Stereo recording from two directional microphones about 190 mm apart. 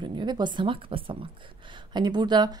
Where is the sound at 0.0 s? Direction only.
25° right (ahead or behind).